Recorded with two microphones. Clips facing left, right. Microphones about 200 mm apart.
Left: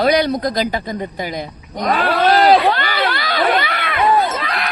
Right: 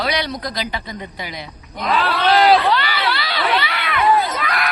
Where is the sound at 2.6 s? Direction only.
50° left (ahead or behind).